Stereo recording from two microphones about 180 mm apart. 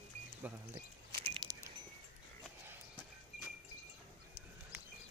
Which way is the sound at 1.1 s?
25° right (ahead or behind).